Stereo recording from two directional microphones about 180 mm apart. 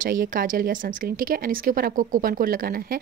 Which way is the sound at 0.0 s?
50° right (ahead or behind).